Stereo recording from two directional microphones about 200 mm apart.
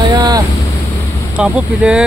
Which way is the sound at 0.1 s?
20° right (ahead or behind).